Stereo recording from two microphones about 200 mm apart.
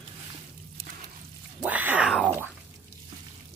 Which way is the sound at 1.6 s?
10° right (ahead or behind).